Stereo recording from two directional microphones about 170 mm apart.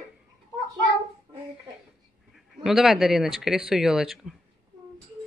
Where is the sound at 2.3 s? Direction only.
Centre (ahead or behind).